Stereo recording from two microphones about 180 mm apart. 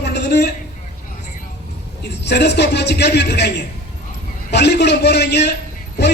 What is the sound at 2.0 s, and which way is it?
A man's voice, 70° left (ahead or behind).